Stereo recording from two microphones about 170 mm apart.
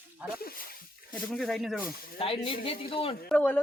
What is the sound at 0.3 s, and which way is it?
Snake, 60° left (ahead or behind).